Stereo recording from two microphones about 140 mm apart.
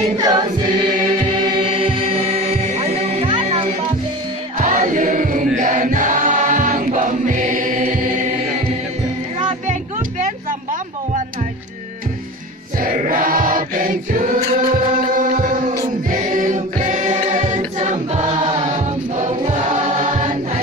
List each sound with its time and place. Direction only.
0.2 s choir: 30° right (ahead or behind)
1.2 s music: 40° right (ahead or behind)
4.6 s a sound: 65° right (ahead or behind)
5.6 s music: 65° right (ahead or behind)
12.8 s choir: 85° right; by 20.2 s 60° right (ahead or behind)